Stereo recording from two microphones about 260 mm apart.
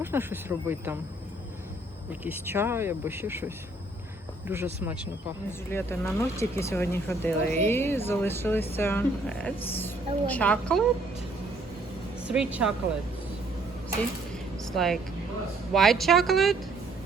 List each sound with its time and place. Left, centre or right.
0.0 s speech: centre
2.2 s speech: centre
5.5 s a woman's voice: centre
12.3 s speech: centre
14.6 s a sound: centre
15.7 s speech: centre